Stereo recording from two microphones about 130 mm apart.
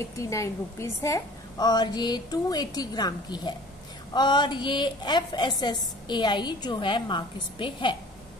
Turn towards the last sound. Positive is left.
turn(degrees=40)  # may be behind; listen again after turning